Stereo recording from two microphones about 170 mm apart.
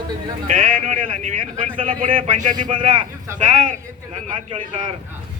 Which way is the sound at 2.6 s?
30° right (ahead or behind).